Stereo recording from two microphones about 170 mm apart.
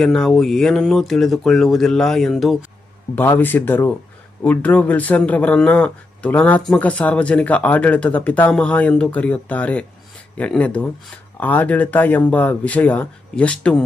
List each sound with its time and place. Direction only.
0.0 s speech: centre (ahead or behind)
3.2 s speech: 10° left (ahead or behind)